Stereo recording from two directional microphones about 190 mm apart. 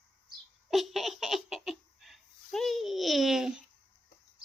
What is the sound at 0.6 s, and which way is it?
Laughter, centre (ahead or behind).